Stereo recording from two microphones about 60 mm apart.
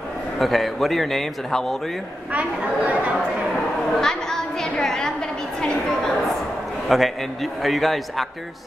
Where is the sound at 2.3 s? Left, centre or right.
Right.